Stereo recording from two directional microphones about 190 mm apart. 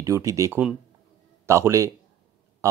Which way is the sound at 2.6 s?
15° right (ahead or behind).